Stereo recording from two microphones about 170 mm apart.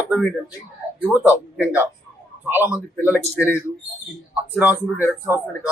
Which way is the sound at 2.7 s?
10° right (ahead or behind).